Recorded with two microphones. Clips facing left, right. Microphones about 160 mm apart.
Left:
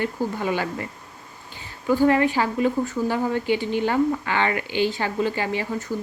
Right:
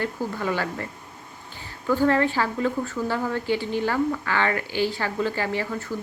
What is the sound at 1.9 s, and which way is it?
A woman's voice, 15° left (ahead or behind).